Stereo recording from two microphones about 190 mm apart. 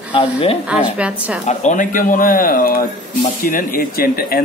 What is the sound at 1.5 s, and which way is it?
Speech, 40° left (ahead or behind).